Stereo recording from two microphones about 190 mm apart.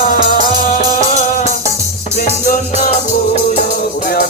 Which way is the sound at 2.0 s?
35° left (ahead or behind).